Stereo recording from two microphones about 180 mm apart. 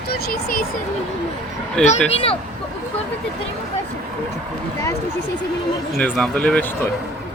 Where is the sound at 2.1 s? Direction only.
30° left (ahead or behind).